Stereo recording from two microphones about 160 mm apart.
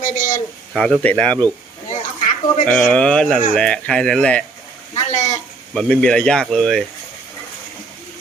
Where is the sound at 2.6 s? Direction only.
5° left (ahead or behind).